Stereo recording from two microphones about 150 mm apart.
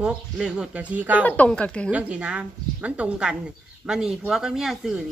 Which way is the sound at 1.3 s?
10° left (ahead or behind).